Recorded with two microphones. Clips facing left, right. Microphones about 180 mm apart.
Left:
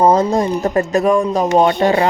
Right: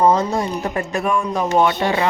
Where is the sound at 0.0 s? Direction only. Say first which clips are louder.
Left 4 dB; 40° left (ahead or behind).